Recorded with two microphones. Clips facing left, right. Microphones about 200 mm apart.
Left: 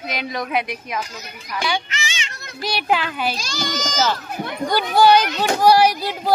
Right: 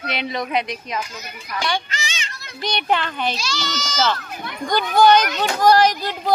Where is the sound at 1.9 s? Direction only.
35° right (ahead or behind).